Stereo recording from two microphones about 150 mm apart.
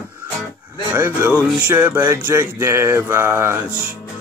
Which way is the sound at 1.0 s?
10° right (ahead or behind).